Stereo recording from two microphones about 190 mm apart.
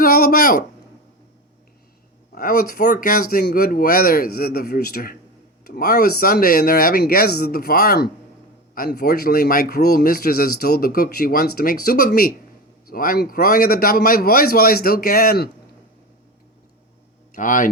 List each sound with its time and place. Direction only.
0.0 s a sound: 50° left (ahead or behind)
2.3 s speech: 50° left (ahead or behind)
17.3 s speech: 45° left (ahead or behind)